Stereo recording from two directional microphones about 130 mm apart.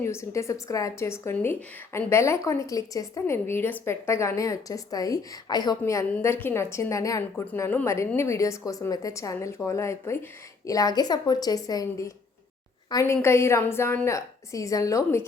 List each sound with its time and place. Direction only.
0.0 s speech: 20° left (ahead or behind)